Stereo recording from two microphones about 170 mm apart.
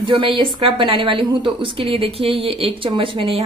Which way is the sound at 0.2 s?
30° right (ahead or behind).